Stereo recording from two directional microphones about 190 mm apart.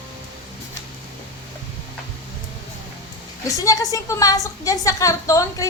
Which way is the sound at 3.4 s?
15° left (ahead or behind).